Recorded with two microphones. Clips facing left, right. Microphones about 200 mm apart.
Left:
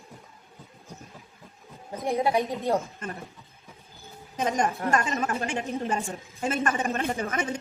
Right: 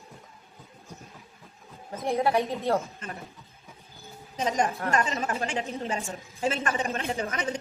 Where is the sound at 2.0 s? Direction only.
15° left (ahead or behind).